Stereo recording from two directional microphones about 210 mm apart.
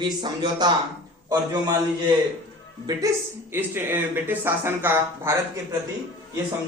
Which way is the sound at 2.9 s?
20° right (ahead or behind).